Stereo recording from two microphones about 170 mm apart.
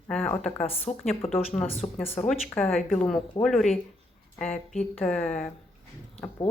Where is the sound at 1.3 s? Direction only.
Centre (ahead or behind).